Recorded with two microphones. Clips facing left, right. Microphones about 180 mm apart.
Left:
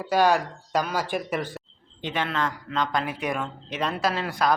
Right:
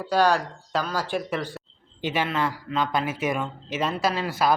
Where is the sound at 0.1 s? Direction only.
15° left (ahead or behind).